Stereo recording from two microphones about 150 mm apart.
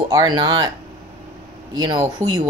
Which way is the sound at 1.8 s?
30° right (ahead or behind).